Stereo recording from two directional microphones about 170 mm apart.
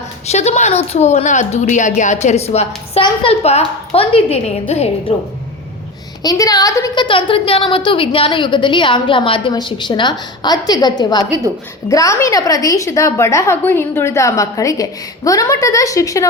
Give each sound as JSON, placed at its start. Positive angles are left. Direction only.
{"t": 0.3, "sound": "a woman's voice", "side_deg": 40}
{"t": 6.2, "sound": "a woman's voice", "side_deg": 20}